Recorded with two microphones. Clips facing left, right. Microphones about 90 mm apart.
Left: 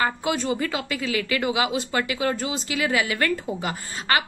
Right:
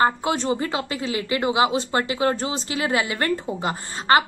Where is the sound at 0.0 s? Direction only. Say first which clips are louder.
Right 4 dB; 30° right (ahead or behind).